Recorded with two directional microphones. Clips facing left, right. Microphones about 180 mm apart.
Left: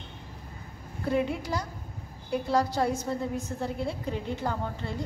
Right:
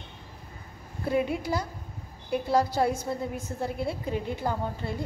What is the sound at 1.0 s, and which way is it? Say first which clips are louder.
A woman's voice: right 1 dB; 10° right (ahead or behind).